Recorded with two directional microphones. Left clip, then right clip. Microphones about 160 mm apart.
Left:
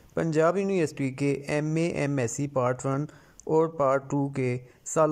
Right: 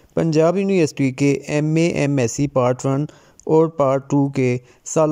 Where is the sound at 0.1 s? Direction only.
15° right (ahead or behind).